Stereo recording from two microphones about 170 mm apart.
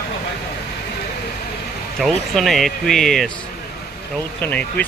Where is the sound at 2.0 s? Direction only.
Centre (ahead or behind).